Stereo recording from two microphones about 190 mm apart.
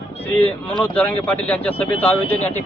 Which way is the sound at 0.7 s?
10° left (ahead or behind).